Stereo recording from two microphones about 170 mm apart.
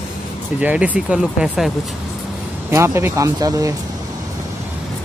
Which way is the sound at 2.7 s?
15° right (ahead or behind).